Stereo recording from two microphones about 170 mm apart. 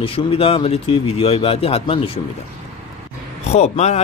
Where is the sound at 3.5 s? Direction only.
40° left (ahead or behind).